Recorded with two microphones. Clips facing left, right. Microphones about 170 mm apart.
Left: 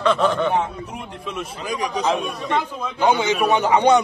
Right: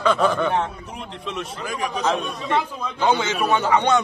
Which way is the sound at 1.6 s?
15° left (ahead or behind).